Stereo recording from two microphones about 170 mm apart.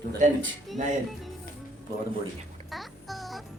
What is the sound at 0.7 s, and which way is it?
Speech, 45° right (ahead or behind).